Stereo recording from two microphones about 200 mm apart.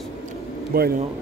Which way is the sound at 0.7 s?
50° right (ahead or behind).